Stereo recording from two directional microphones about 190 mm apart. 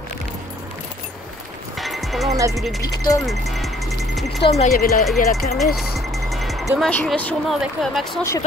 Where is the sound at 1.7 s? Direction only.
Centre (ahead or behind).